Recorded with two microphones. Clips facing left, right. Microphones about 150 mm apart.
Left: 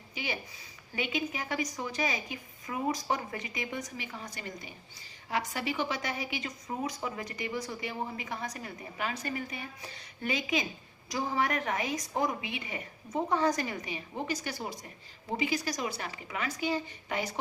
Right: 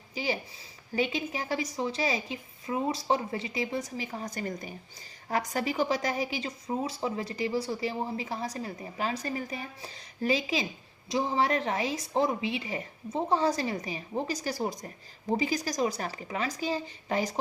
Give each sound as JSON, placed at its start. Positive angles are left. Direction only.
{"t": 0.1, "sound": "a woman's voice", "side_deg": -35}